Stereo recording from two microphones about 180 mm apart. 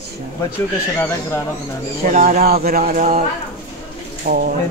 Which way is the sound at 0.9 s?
10° left (ahead or behind).